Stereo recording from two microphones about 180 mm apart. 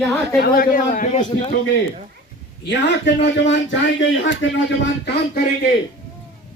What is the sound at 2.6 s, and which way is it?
A man's voice, 75° left (ahead or behind).